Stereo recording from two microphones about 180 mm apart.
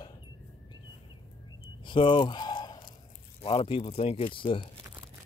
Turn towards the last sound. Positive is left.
turn(degrees=30)  # may be behind; listen again after turning